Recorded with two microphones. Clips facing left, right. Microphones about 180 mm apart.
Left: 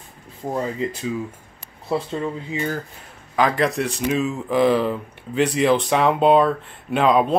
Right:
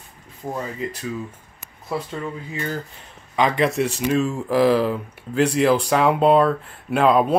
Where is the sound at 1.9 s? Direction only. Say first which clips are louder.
Left 4 dB; 30° left (ahead or behind).